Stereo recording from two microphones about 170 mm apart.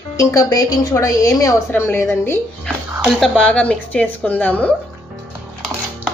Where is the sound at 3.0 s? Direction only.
5° left (ahead or behind).